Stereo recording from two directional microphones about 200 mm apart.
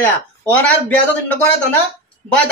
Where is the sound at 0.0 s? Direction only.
10° left (ahead or behind).